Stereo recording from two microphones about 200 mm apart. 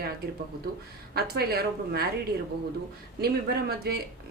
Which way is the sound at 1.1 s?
50° right (ahead or behind).